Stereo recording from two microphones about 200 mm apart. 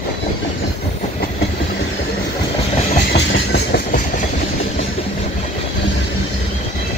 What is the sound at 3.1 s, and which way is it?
Train, 55° left (ahead or behind).